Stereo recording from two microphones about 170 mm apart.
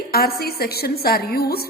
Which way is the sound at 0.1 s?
65° left (ahead or behind).